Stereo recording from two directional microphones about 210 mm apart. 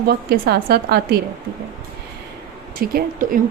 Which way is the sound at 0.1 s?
50° right (ahead or behind).